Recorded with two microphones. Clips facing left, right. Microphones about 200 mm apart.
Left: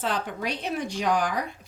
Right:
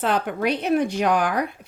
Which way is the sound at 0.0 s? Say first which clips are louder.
Right 7 dB; 60° right (ahead or behind).